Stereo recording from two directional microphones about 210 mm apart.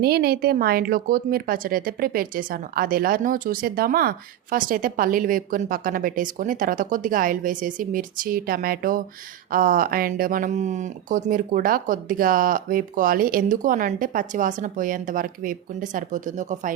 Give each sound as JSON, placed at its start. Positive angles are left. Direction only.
{"t": 0.0, "sound": "speech", "side_deg": -50}